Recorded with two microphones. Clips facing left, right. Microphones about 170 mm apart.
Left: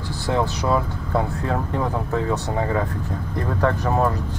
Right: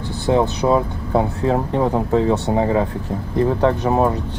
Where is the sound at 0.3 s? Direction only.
20° right (ahead or behind).